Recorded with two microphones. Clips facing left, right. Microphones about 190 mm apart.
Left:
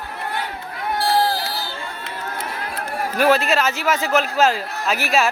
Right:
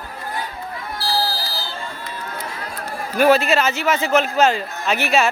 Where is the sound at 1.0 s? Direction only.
65° left (ahead or behind).